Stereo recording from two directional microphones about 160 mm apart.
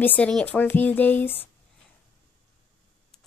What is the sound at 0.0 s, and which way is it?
Speech, 10° left (ahead or behind).